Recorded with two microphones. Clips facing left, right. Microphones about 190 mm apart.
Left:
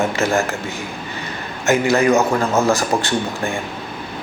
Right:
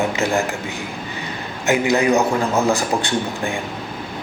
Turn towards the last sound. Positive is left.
turn(degrees=-15)  # may be behind; listen again after turning